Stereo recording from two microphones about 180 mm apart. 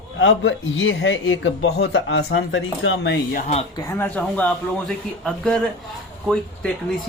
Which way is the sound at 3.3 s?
40° left (ahead or behind).